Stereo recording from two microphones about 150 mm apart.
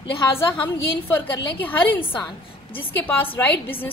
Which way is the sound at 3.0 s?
10° left (ahead or behind).